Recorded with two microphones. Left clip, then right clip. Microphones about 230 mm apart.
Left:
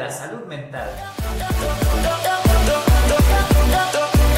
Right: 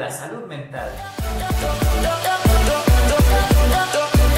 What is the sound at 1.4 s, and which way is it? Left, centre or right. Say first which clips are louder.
Music: even; centre.